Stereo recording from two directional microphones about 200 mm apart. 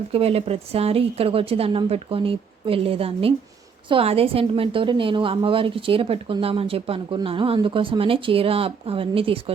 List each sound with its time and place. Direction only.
0.1 s a woman's voice: 30° right (ahead or behind)